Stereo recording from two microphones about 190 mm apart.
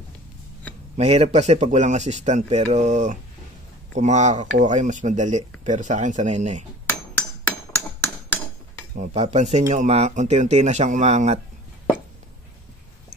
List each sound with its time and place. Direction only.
0.9 s speech: 35° right (ahead or behind)
9.1 s speech: 35° right (ahead or behind)